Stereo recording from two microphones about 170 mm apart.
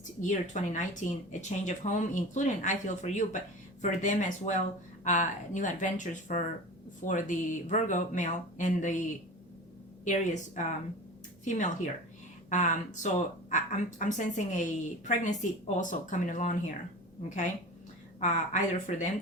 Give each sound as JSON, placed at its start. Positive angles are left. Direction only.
{"t": 0.2, "sound": "speech", "side_deg": 45}